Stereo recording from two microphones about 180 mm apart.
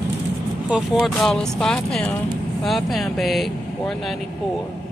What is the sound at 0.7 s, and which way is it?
Speech, 5° right (ahead or behind).